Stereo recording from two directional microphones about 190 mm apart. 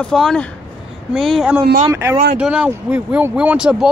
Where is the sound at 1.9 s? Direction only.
15° right (ahead or behind).